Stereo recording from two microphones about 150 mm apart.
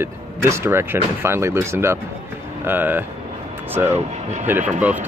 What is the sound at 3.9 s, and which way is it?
Speech, 50° right (ahead or behind).